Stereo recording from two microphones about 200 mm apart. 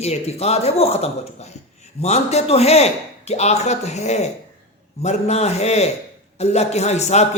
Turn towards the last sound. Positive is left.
turn(degrees=35)  # may be behind; listen again after turning